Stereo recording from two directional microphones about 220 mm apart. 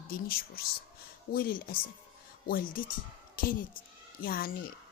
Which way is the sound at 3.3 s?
40° left (ahead or behind).